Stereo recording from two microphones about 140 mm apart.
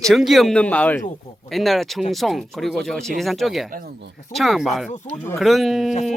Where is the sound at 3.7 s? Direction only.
90° right.